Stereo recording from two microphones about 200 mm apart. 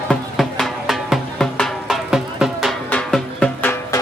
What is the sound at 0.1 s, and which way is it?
Music, 5° left (ahead or behind).